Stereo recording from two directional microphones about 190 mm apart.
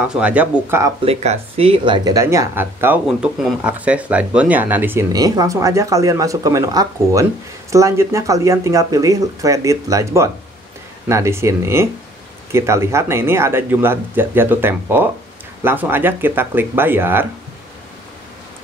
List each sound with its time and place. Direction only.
0.1 s speech: 5° right (ahead or behind)
1.0 s speech: 30° right (ahead or behind); by 17.3 s 10° right (ahead or behind)